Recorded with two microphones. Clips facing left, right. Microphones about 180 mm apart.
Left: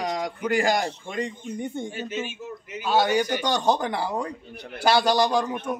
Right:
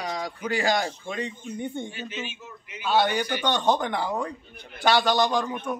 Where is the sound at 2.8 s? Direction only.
15° left (ahead or behind).